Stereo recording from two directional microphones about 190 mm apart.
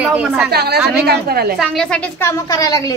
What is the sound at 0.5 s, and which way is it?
A woman's voice, 60° right (ahead or behind).